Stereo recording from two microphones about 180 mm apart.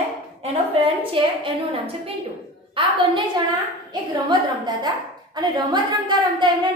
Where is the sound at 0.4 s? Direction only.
30° right (ahead or behind).